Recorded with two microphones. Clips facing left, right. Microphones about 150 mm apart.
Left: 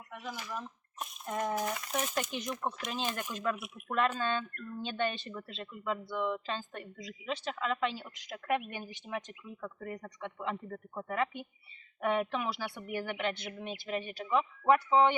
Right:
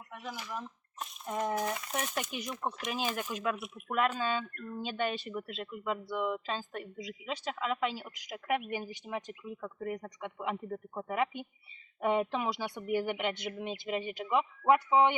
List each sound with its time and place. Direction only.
0.2 s speech: 5° right (ahead or behind)